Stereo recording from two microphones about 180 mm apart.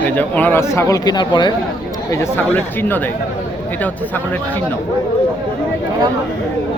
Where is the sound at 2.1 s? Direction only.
15° left (ahead or behind).